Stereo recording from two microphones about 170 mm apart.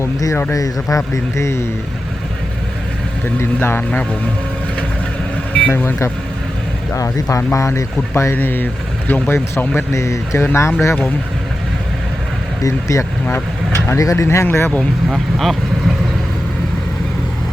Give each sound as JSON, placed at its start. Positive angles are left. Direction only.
{"t": 0.0, "sound": "speech", "side_deg": 20}
{"t": 3.6, "sound": "speech", "side_deg": 10}
{"t": 5.5, "sound": "speech", "side_deg": 10}
{"t": 12.6, "sound": "speech", "side_deg": 15}